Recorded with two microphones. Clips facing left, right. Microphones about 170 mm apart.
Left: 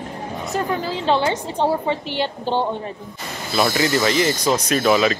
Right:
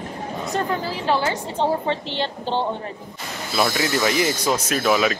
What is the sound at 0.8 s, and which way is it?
A woman's voice, 20° left (ahead or behind).